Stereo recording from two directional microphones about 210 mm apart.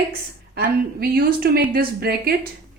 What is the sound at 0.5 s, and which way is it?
Speech, 50° right (ahead or behind).